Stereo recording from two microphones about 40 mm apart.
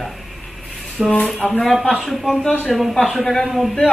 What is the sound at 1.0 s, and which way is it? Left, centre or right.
Speech, centre.